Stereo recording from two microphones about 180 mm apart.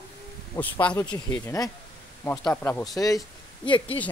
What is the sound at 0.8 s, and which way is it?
Speech, 15° left (ahead or behind).